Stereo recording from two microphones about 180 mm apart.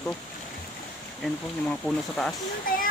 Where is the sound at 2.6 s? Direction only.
50° left (ahead or behind).